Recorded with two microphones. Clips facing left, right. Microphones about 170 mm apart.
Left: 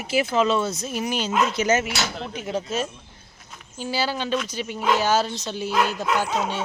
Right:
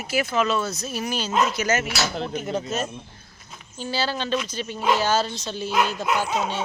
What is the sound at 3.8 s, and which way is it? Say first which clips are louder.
Speech: left 1 dB; 10° left (ahead or behind).